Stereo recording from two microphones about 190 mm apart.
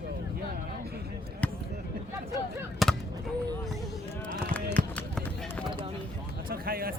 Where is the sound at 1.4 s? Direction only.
5° left (ahead or behind).